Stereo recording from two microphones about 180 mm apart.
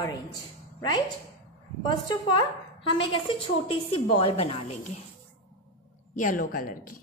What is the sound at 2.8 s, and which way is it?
A woman's voice, 25° left (ahead or behind).